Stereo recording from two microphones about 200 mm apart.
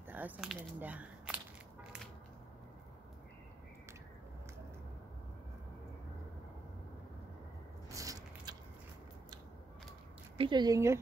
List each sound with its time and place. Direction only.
0.0 s speech: 10° right (ahead or behind)
7.9 s biting: 15° right (ahead or behind)
10.3 s speech: 25° right (ahead or behind)